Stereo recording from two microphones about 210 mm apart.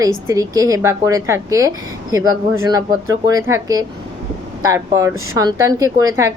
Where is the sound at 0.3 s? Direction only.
15° right (ahead or behind).